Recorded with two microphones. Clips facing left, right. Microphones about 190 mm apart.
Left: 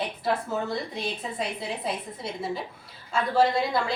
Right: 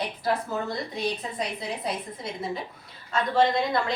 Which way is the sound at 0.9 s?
Centre (ahead or behind).